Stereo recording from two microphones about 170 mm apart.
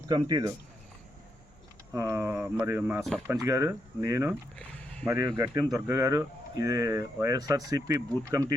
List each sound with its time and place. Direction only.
0.1 s speech: 25° right (ahead or behind)
1.9 s speech: 15° right (ahead or behind)
4.5 s a sound: 5° left (ahead or behind)
5.0 s speech: 15° right (ahead or behind)